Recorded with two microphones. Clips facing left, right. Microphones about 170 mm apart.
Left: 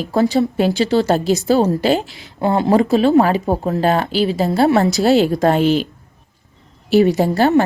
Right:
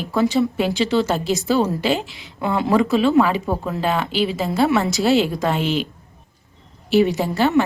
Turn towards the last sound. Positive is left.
turn(degrees=40)  # may be behind; listen again after turning